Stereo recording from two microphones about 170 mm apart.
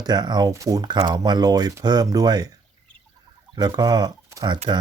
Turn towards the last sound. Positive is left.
turn(degrees=-25)  # may be behind; listen again after turning